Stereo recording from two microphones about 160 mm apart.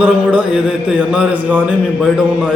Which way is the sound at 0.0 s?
5° right (ahead or behind).